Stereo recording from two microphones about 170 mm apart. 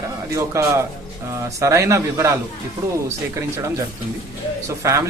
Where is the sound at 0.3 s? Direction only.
15° right (ahead or behind).